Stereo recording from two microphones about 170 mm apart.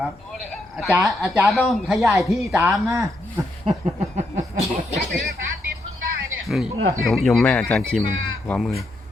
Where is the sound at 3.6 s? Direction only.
35° right (ahead or behind).